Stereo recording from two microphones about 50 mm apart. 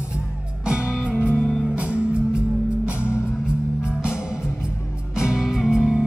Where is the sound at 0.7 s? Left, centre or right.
Centre.